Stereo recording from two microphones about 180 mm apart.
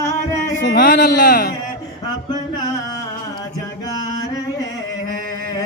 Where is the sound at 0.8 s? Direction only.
50° left (ahead or behind).